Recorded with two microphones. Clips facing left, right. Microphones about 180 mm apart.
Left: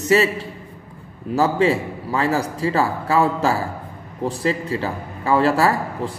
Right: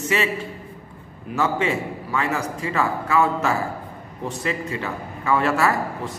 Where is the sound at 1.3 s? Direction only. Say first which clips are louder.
Left 5 dB; 35° left (ahead or behind).